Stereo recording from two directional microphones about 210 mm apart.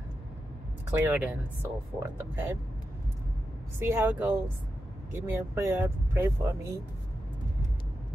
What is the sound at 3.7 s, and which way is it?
Speech, 10° right (ahead or behind).